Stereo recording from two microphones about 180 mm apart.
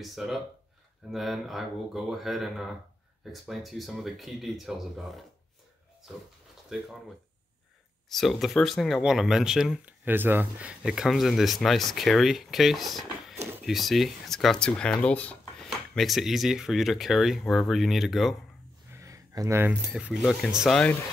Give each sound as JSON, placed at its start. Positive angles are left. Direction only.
{"t": 0.0, "sound": "speech", "side_deg": 0}
{"t": 6.7, "sound": "speech", "side_deg": -5}
{"t": 8.1, "sound": "speech", "side_deg": 0}
{"t": 18.9, "sound": "speech", "side_deg": -20}